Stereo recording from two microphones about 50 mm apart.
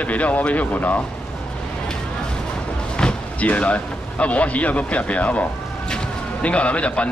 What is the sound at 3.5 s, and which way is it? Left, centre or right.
A man's voice, left.